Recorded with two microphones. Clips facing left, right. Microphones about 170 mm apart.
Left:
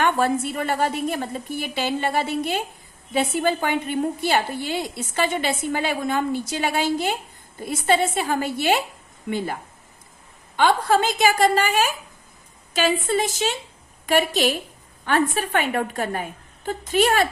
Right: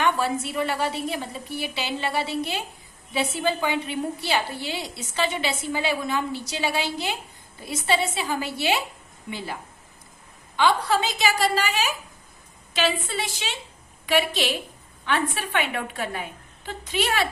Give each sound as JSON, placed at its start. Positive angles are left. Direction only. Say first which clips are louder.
{"t": 0.0, "sound": "a woman's voice", "louder": "left 3 dB", "side_deg": 50}
{"t": 10.6, "sound": "a woman's voice", "louder": "left 3 dB", "side_deg": 50}